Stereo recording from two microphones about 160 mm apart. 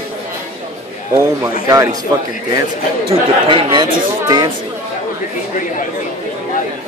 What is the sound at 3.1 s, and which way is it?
Speech, 35° right (ahead or behind).